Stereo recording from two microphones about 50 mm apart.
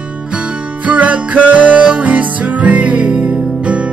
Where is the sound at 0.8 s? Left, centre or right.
Right.